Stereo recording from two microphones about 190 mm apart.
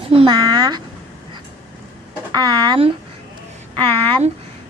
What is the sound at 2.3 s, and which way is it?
Speech, 20° right (ahead or behind).